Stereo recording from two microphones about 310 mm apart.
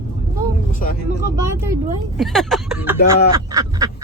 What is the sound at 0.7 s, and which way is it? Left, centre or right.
Speech, left.